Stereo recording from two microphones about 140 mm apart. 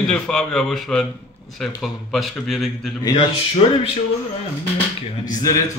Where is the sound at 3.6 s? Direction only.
40° left (ahead or behind).